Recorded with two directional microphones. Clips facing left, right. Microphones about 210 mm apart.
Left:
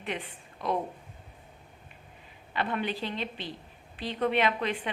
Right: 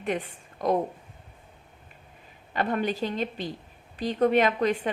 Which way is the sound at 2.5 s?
45° right (ahead or behind).